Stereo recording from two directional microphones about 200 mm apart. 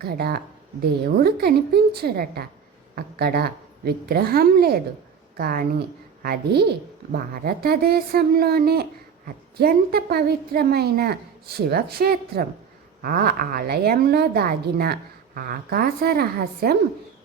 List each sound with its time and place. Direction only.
0.0 s speech: 50° right (ahead or behind)